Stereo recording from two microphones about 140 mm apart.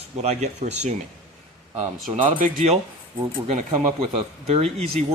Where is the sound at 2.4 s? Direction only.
50° right (ahead or behind).